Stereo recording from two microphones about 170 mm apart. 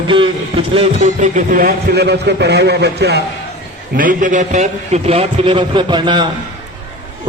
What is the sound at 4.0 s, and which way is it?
A man's voice, 50° right (ahead or behind).